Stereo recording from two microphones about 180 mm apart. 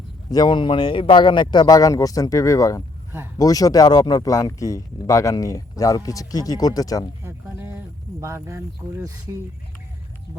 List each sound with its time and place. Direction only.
0.3 s speech: 25° left (ahead or behind)
8.2 s speech: 15° right (ahead or behind)